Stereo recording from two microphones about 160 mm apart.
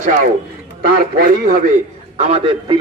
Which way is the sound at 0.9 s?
65° right (ahead or behind).